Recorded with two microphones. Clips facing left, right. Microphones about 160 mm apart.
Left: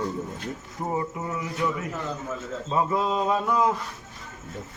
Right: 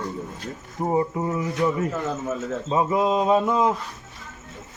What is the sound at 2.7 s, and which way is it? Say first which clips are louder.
A man's voice: right 3 dB; 15° right (ahead or behind).